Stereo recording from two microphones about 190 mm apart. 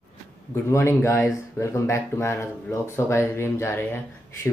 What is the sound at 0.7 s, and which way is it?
Speech, 15° left (ahead or behind).